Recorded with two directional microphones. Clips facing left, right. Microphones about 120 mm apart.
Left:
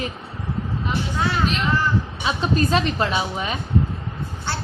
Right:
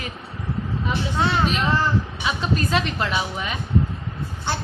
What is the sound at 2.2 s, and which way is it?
A woman's voice, 30° left (ahead or behind).